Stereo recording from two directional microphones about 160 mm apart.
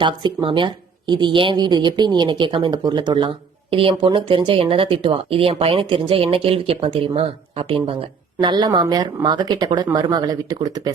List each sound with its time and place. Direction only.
0.0 s a woman's voice: 30° right (ahead or behind)